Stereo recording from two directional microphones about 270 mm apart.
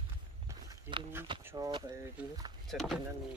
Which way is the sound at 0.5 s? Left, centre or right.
Centre.